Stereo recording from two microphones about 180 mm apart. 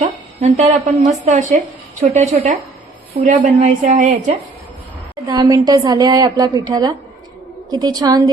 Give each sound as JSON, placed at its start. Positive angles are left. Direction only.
{"t": 0.0, "sound": "a woman's voice", "side_deg": -35}
{"t": 5.3, "sound": "a woman's voice", "side_deg": -20}